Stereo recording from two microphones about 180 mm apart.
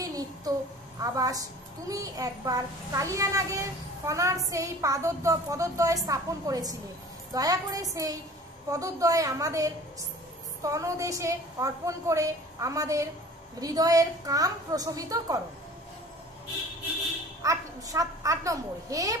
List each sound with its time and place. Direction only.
0.0 s a sound: 20° right (ahead or behind)
1.9 s a woman's voice: 20° right (ahead or behind)
17.4 s a woman's voice: 20° right (ahead or behind)